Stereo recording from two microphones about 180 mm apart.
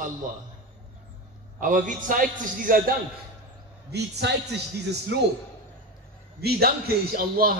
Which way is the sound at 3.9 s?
70° right (ahead or behind).